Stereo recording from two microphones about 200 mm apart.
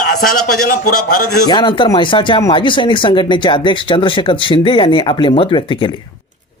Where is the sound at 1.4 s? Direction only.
20° left (ahead or behind).